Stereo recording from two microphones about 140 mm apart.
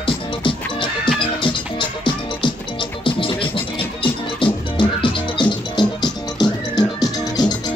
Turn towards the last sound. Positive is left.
turn(degrees=30)  # may be behind; listen again after turning